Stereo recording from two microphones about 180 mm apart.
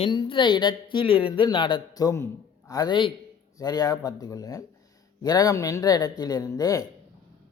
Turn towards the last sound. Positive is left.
turn(degrees=20)  # may be behind; listen again after turning